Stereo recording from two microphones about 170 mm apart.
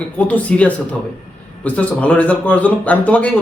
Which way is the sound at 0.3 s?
10° left (ahead or behind).